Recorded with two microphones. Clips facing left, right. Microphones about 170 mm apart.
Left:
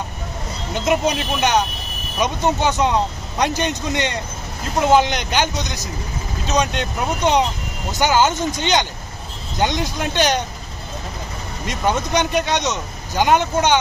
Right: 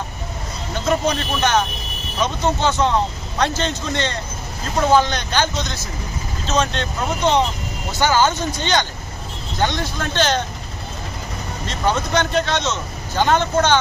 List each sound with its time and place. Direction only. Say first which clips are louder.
0.7 s speech: left 1 dB; 15° left (ahead or behind)
11.6 s speech: left 1 dB; 15° left (ahead or behind)